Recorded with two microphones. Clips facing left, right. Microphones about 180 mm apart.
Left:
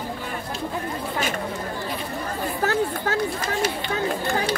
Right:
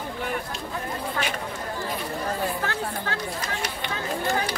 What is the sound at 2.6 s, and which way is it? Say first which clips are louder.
Speech: left 6 dB; 40° left (ahead or behind).